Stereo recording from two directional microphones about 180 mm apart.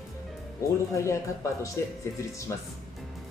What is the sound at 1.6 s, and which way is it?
Speech, 15° left (ahead or behind).